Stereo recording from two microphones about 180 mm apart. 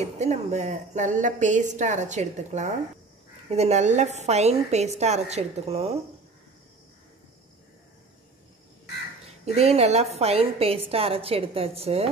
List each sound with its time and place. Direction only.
0.0 s a woman's voice: 40° right (ahead or behind)
9.6 s a woman's voice: 35° right (ahead or behind)